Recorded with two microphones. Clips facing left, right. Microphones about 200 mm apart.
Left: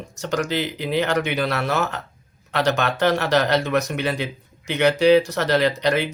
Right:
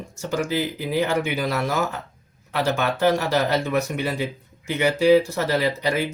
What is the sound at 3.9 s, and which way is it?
Speech, 75° left (ahead or behind).